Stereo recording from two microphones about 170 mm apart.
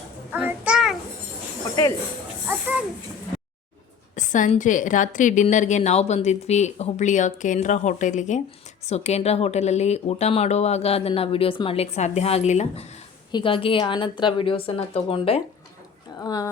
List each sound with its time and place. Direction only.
0.3 s child singing: 10° right (ahead or behind)
4.1 s a woman's voice: 45° left (ahead or behind)
13.3 s speech: 30° left (ahead or behind)
16.2 s speech: 20° left (ahead or behind)